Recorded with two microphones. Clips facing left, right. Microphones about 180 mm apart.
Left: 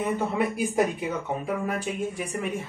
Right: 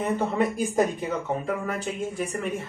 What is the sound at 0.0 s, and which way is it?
Speech, 10° left (ahead or behind).